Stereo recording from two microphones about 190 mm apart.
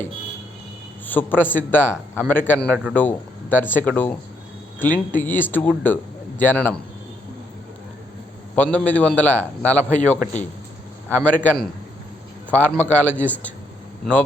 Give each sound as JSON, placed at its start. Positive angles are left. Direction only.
{"t": 1.0, "sound": "a man's voice", "side_deg": 10}
{"t": 8.5, "sound": "a man's voice", "side_deg": 5}